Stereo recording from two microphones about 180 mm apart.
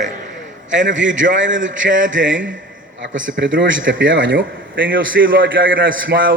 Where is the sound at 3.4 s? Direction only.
85° right.